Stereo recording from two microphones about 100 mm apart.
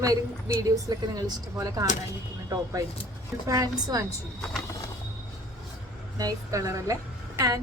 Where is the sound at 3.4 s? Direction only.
35° right (ahead or behind).